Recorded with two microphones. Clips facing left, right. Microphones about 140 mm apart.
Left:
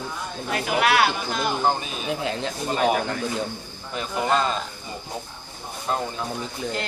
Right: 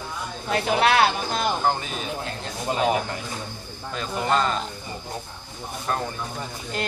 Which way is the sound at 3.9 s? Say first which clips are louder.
Left 1 dB; 15° left (ahead or behind).